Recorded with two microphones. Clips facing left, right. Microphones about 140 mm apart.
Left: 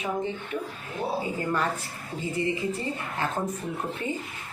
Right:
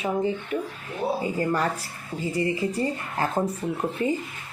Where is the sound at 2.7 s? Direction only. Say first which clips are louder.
Right 4 dB; 40° right (ahead or behind).